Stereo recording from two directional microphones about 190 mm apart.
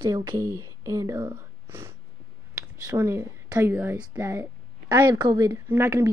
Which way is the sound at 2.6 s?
15° right (ahead or behind).